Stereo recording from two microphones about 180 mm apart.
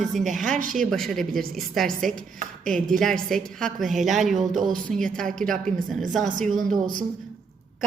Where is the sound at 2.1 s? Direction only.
50° right (ahead or behind).